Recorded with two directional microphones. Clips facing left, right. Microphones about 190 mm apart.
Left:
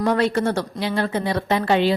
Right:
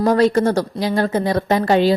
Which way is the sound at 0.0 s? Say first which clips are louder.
Right 5 dB; 40° right (ahead or behind).